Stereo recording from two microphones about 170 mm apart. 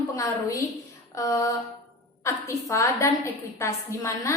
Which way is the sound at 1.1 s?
20° left (ahead or behind).